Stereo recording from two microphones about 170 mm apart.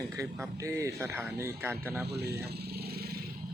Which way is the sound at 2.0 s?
70° right (ahead or behind).